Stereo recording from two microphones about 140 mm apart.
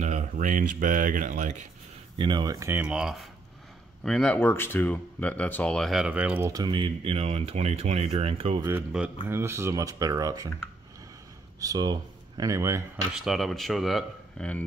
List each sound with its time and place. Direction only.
0.0 s speech: 60° right (ahead or behind)
2.1 s speech: 35° right (ahead or behind)
2.9 s speech: 5° right (ahead or behind)
6.4 s speech: 30° right (ahead or behind); by 8.6 s 45° right (ahead or behind)
9.0 s speech: 5° right (ahead or behind)
9.3 s speech: 15° right (ahead or behind)
11.6 s speech: 30° right (ahead or behind)
13.1 s speech: centre (ahead or behind)